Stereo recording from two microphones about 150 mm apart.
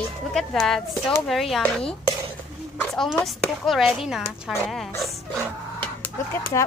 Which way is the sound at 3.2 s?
Centre (ahead or behind).